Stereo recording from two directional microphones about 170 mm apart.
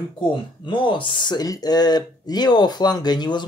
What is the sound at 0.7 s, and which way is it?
Speech, 30° left (ahead or behind).